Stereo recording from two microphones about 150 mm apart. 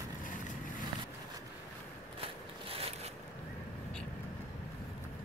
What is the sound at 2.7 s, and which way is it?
Zipper, 40° right (ahead or behind).